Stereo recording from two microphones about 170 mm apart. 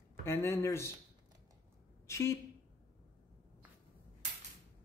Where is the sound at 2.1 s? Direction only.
15° left (ahead or behind).